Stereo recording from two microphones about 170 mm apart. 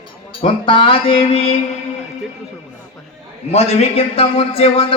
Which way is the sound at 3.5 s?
40° left (ahead or behind).